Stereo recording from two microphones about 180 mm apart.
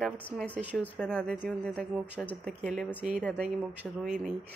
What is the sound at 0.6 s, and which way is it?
Speech, 10° right (ahead or behind).